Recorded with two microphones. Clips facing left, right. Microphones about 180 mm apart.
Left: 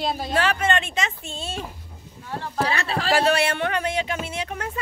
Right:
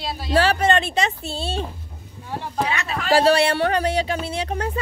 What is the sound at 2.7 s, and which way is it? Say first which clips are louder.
Speech: left 1 dB; 30° left (ahead or behind).